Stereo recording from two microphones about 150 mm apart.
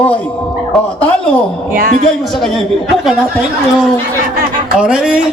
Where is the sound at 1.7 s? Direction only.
75° right (ahead or behind).